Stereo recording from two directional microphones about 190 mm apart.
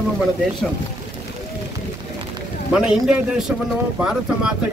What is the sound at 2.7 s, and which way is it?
A man's voice, 5° right (ahead or behind).